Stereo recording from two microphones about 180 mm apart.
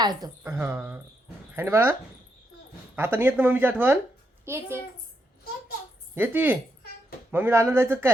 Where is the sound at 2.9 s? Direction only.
10° right (ahead or behind).